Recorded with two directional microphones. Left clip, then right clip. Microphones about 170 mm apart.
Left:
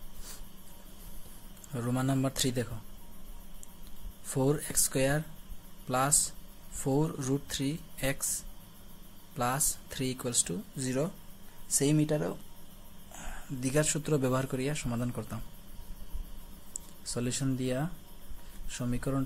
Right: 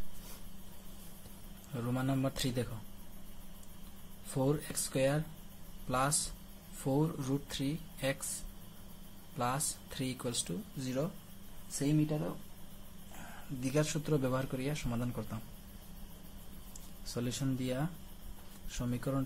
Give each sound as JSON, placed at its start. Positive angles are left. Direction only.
{"t": 1.7, "sound": "speech", "side_deg": 20}
{"t": 4.3, "sound": "speech", "side_deg": 20}
{"t": 9.4, "sound": "speech", "side_deg": 15}
{"t": 11.8, "sound": "speech", "side_deg": 40}
{"t": 13.6, "sound": "speech", "side_deg": 20}
{"t": 17.0, "sound": "speech", "side_deg": 20}